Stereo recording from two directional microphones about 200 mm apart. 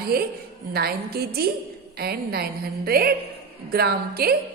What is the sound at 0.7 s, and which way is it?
A woman's voice, 50° right (ahead or behind).